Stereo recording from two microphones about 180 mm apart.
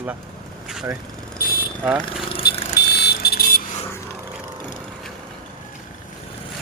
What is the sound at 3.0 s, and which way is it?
Vehicle, 60° left (ahead or behind).